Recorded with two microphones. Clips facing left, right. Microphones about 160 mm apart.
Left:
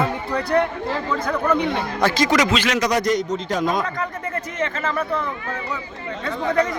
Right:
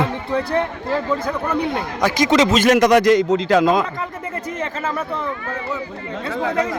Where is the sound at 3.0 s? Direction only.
90° right.